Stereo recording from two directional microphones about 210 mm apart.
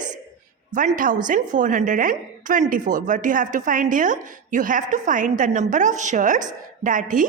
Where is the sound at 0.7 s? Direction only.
40° right (ahead or behind).